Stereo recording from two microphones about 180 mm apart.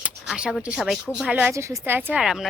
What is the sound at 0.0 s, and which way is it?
A woman's voice, 5° right (ahead or behind).